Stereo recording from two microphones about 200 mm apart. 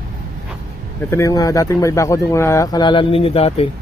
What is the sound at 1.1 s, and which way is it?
Speech, 15° left (ahead or behind).